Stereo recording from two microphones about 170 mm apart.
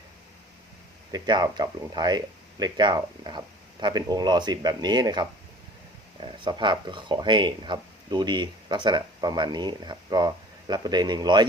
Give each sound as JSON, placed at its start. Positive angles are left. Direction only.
{"t": 1.1, "sound": "speech", "side_deg": -25}